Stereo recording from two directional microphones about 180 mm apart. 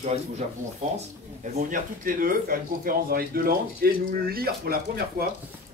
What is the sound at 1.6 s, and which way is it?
Speech, 50° right (ahead or behind).